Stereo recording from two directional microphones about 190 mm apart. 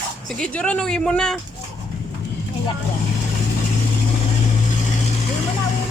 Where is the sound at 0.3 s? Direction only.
5° left (ahead or behind).